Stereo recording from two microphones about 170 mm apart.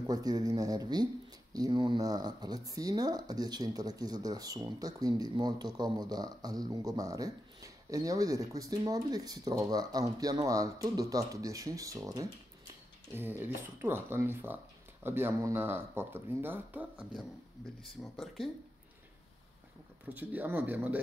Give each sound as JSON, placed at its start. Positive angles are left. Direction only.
{"t": 0.0, "sound": "speech", "side_deg": -20}
{"t": 20.2, "sound": "speech", "side_deg": -10}